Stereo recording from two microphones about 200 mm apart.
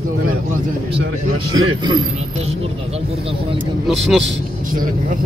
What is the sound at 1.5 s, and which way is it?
Speech, 20° right (ahead or behind).